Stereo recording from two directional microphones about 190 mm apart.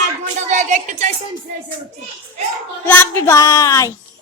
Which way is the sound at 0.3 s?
40° right (ahead or behind).